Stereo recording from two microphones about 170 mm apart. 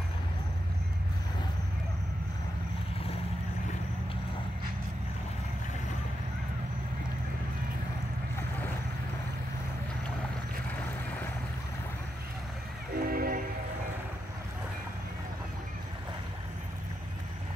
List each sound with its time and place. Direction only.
12.9 s train: 60° right (ahead or behind)